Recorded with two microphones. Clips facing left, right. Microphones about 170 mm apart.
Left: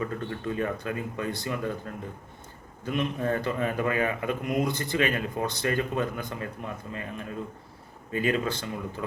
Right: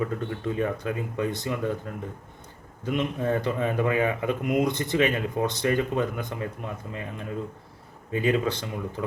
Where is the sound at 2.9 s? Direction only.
15° right (ahead or behind).